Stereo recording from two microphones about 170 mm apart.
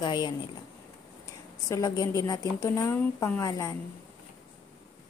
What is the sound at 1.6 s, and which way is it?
A woman's voice, 20° left (ahead or behind).